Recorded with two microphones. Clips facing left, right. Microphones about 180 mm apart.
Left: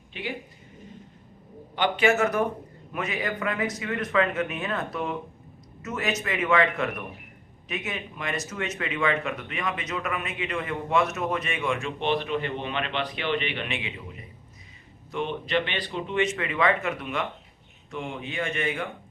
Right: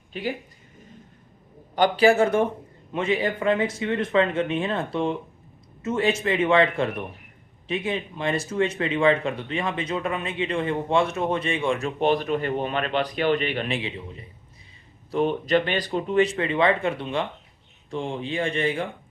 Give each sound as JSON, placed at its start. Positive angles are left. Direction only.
{"t": 0.1, "sound": "speech", "side_deg": -40}
{"t": 1.7, "sound": "speech", "side_deg": -40}